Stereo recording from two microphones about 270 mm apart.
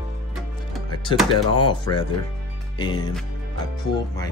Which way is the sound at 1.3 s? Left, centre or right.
Centre.